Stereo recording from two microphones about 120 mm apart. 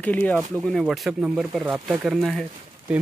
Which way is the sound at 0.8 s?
5° right (ahead or behind).